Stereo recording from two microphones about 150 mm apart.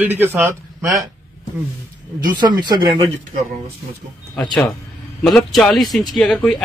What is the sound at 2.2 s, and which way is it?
Speech, 30° right (ahead or behind).